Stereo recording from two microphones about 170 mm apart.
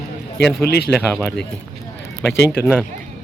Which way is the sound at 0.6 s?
75° left (ahead or behind).